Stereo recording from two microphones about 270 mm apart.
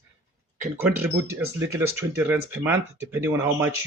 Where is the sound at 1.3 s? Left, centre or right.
Centre.